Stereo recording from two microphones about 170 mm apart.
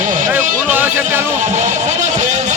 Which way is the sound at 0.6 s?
10° right (ahead or behind).